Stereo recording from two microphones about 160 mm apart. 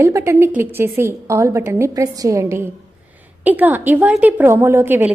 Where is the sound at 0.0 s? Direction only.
20° right (ahead or behind).